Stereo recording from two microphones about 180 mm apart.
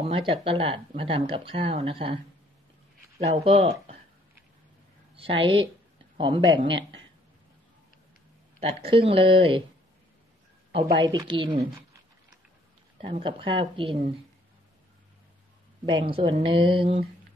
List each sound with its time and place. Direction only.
0.0 s speech: 30° right (ahead or behind)
3.2 s speech: 35° right (ahead or behind)
5.1 s a woman's voice: 30° right (ahead or behind)
8.5 s speech: 30° right (ahead or behind)
10.7 s speech: 35° right (ahead or behind)
11.1 s speech: 25° right (ahead or behind)
13.0 s speech: 30° right (ahead or behind)
15.8 s speech: 25° right (ahead or behind)